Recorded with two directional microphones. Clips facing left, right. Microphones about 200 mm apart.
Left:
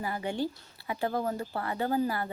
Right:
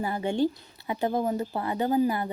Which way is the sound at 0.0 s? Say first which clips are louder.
Right 6 dB; 25° right (ahead or behind).